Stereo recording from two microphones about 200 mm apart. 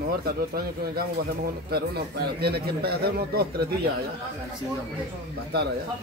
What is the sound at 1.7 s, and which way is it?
Speech, 50° right (ahead or behind).